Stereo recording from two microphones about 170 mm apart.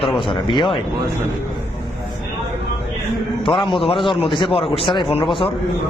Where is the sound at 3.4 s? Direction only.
30° left (ahead or behind).